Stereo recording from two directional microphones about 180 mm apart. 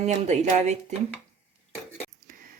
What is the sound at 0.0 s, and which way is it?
Speech, 40° right (ahead or behind).